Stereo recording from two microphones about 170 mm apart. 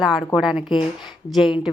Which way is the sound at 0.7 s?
25° left (ahead or behind).